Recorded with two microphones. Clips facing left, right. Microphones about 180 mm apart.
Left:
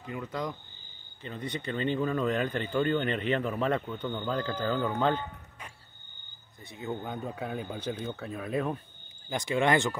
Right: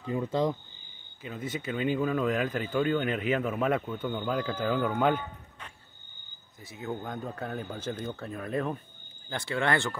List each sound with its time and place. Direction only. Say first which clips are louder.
0.0 s speech: right 7 dB; 30° right (ahead or behind)
1.2 s speech: right 1 dB; 5° right (ahead or behind)
6.6 s speech: even; centre (ahead or behind)
9.3 s speech: left 3 dB; 15° left (ahead or behind)